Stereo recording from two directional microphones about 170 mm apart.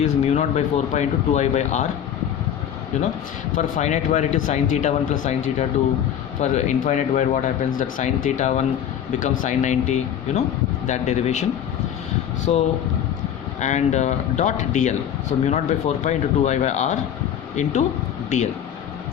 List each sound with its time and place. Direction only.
0.0 s speech: 40° left (ahead or behind)
3.8 s speech: 45° left (ahead or behind)
12.5 s speech: 35° left (ahead or behind)
13.6 s speech: 45° left (ahead or behind)
15.3 s speech: 35° left (ahead or behind)